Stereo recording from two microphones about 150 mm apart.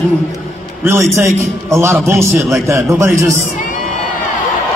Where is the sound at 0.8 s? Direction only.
20° right (ahead or behind).